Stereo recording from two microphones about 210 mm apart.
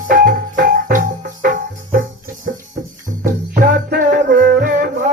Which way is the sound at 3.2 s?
45° right (ahead or behind).